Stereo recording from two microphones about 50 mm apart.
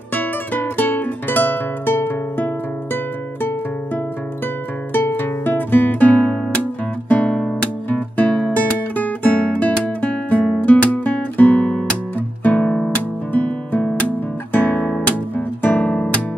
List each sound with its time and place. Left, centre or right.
0.1 s music: left
4.9 s guitar: left
7.9 s music: left
10.6 s guitar: left
11.7 s guitar: left
12.4 s guitar: left
15.9 s guitar: left